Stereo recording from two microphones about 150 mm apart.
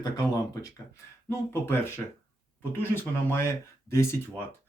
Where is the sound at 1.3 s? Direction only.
15° left (ahead or behind).